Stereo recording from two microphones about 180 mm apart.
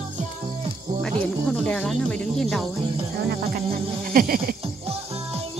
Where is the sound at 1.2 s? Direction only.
5° left (ahead or behind).